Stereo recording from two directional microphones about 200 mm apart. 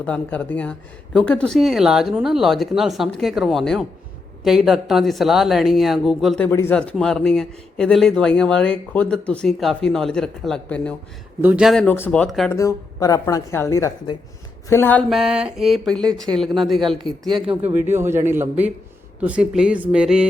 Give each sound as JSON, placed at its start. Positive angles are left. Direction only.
{"t": 0.0, "sound": "a man's voice", "side_deg": 5}
{"t": 11.3, "sound": "a man's voice", "side_deg": -10}
{"t": 12.5, "sound": "speech", "side_deg": 15}
{"t": 15.1, "sound": "a man's voice", "side_deg": -5}
{"t": 17.7, "sound": "a man's voice", "side_deg": -10}